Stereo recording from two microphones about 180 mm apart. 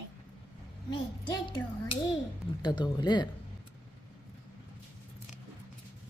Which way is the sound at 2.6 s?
25° left (ahead or behind).